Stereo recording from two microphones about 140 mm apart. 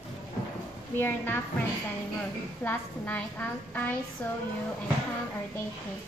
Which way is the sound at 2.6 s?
10° left (ahead or behind).